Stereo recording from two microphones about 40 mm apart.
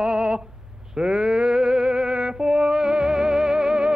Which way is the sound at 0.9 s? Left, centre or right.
Right.